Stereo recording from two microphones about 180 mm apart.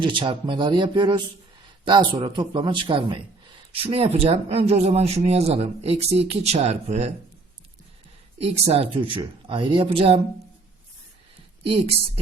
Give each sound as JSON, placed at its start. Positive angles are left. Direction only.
{"t": 0.0, "sound": "a man's voice", "side_deg": -25}
{"t": 8.4, "sound": "a man's voice", "side_deg": -35}
{"t": 11.6, "sound": "a man's voice", "side_deg": -35}